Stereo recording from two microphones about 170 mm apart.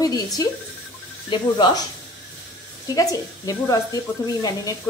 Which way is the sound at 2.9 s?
20° left (ahead or behind).